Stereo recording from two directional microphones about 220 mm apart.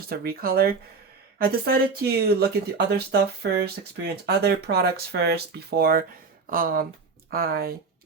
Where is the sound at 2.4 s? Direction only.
45° right (ahead or behind).